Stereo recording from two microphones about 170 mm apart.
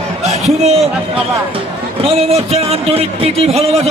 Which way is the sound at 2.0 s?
35° right (ahead or behind).